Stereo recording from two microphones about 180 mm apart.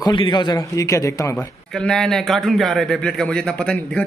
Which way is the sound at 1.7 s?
5° left (ahead or behind).